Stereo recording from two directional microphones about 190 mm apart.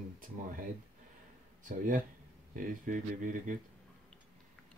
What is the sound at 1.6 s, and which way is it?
Speech, 45° right (ahead or behind).